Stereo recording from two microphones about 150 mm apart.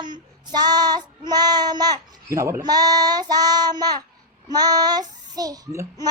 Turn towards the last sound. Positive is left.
turn(degrees=-20)  # may be behind; listen again after turning